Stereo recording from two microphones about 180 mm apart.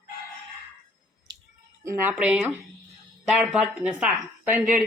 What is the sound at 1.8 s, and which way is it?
Speech, 15° right (ahead or behind).